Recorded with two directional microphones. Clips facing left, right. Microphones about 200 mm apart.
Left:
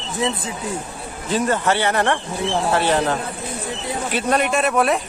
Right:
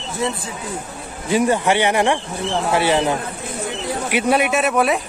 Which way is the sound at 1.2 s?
15° right (ahead or behind).